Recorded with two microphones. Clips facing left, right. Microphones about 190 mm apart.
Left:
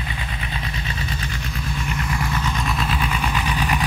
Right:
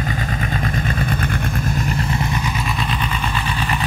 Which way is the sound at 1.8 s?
30° right (ahead or behind).